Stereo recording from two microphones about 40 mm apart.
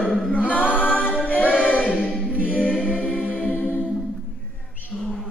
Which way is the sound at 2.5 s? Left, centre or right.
Left.